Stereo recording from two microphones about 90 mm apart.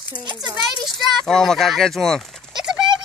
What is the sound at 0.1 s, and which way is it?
Speech, 55° right (ahead or behind).